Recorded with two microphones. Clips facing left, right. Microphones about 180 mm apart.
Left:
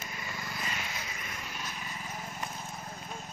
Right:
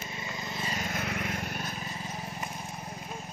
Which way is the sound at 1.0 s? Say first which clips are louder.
Right 9 dB; 65° right (ahead or behind).